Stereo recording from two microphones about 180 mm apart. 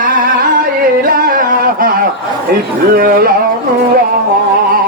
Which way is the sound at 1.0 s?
55° right (ahead or behind).